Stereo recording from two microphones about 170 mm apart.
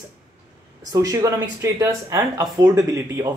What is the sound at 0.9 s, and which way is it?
Speech, 20° right (ahead or behind).